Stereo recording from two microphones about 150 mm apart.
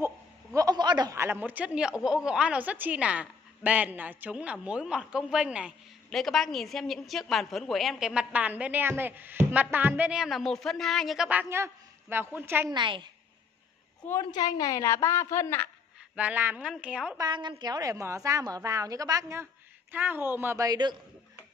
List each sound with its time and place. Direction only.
0.6 s a woman's voice: 25° right (ahead or behind)
12.7 s a woman's voice: 30° right (ahead or behind)
14.3 s a woman's voice: 25° left (ahead or behind)
16.2 s speech: 10° right (ahead or behind)
17.2 s a woman's voice: 30° right (ahead or behind)